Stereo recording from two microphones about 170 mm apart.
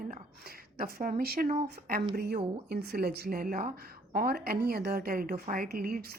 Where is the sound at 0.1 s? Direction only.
60° right (ahead or behind).